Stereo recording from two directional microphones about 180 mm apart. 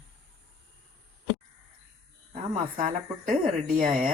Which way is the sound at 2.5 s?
45° right (ahead or behind).